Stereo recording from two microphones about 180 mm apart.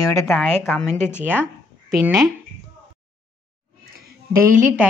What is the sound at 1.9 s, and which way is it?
Speech, centre (ahead or behind).